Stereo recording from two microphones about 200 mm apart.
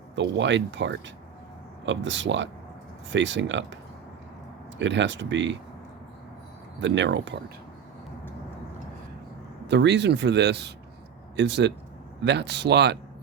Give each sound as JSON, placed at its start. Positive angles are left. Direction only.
{"t": 0.2, "sound": "speech", "side_deg": -65}
{"t": 4.8, "sound": "speech", "side_deg": -65}
{"t": 6.7, "sound": "speech", "side_deg": -65}
{"t": 9.6, "sound": "speech", "side_deg": -60}